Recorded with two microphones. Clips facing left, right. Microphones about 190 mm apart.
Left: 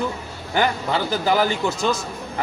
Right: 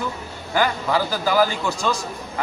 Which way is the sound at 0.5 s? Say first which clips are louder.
Even; 20° left (ahead or behind).